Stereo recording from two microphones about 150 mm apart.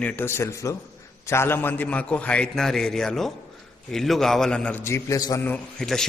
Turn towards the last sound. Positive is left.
turn(degrees=5)  # may be behind; listen again after turning